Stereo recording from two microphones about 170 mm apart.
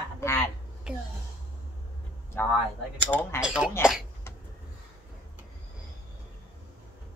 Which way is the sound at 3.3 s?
5° right (ahead or behind).